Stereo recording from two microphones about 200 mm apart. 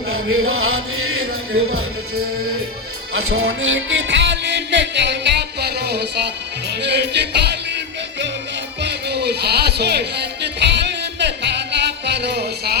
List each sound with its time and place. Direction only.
0.1 s chant: 90° right
3.1 s music: 90° right; by 7.6 s 55° right (ahead or behind)
8.8 s music: 55° right (ahead or behind)